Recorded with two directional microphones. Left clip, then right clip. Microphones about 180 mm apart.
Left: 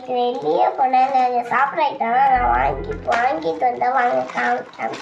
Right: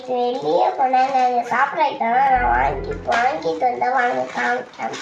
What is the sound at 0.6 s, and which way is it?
Speech, 20° left (ahead or behind).